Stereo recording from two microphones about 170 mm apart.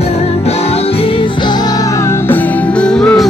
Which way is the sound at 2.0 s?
15° left (ahead or behind).